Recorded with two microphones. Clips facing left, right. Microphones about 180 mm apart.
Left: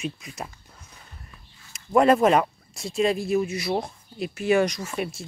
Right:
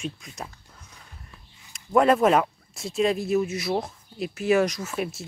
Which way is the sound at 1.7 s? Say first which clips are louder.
Left 1 dB; centre (ahead or behind).